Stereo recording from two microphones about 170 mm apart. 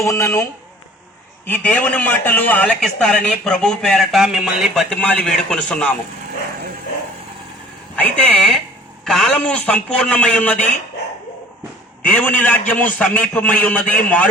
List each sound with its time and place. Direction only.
0.0 s a man's voice: 15° left (ahead or behind)
1.5 s a man's voice: 10° left (ahead or behind)
7.9 s a man's voice: 10° left (ahead or behind)
12.0 s a man's voice: 10° left (ahead or behind)